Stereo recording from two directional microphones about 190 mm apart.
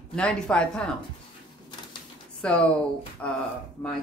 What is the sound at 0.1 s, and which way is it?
Speech, 5° left (ahead or behind).